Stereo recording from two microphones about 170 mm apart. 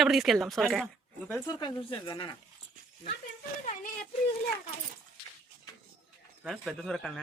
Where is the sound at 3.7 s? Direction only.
45° left (ahead or behind).